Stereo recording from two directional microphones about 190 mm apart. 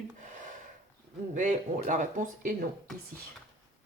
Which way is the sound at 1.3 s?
40° right (ahead or behind).